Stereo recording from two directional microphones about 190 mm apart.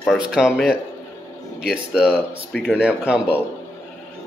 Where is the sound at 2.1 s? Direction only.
5° left (ahead or behind).